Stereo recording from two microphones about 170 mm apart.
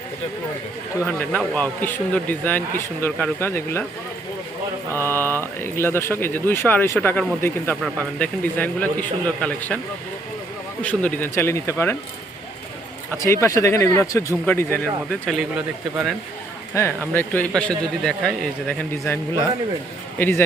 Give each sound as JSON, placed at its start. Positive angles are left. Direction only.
{"t": 1.0, "sound": "speech", "side_deg": 10}
{"t": 4.9, "sound": "speech", "side_deg": 10}
{"t": 10.8, "sound": "speech", "side_deg": 10}
{"t": 13.1, "sound": "speech", "side_deg": 15}
{"t": 15.3, "sound": "speech", "side_deg": -5}
{"t": 16.7, "sound": "speech", "side_deg": 15}
{"t": 19.0, "sound": "speech", "side_deg": 15}